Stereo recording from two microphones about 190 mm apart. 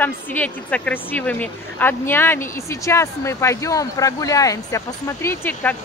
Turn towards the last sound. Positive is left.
turn(degrees=10)  # may be behind; listen again after turning